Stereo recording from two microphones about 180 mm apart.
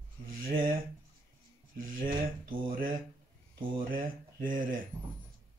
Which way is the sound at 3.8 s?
50° right (ahead or behind).